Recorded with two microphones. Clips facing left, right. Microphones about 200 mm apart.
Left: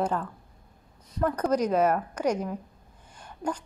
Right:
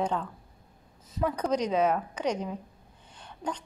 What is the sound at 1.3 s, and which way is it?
A woman's voice, 5° left (ahead or behind).